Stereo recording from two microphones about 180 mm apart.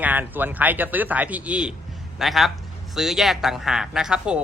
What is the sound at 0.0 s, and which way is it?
Speech, 10° right (ahead or behind).